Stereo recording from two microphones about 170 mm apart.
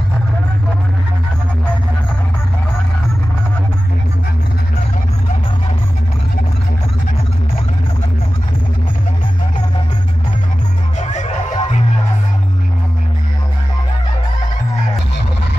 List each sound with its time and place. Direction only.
11.0 s music: 45° left (ahead or behind)